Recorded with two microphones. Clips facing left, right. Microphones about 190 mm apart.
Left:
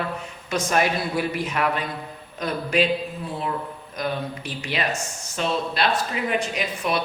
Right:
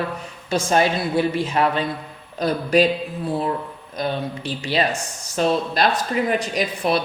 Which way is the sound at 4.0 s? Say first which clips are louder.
Right 3 dB; 30° right (ahead or behind).